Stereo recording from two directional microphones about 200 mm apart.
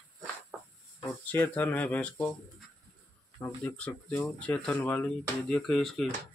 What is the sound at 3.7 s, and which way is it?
Speech, 5° left (ahead or behind).